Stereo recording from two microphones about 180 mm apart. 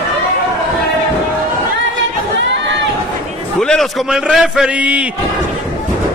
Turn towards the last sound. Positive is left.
turn(degrees=-5)  # may be behind; listen again after turning